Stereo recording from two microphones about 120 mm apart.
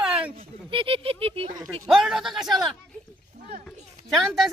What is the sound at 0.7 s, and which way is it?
Speech, 50° right (ahead or behind).